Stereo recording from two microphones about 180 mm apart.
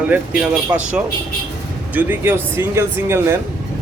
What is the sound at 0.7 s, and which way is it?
Speech, 20° right (ahead or behind).